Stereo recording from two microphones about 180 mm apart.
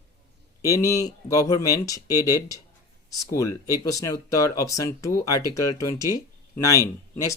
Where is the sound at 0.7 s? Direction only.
20° left (ahead or behind).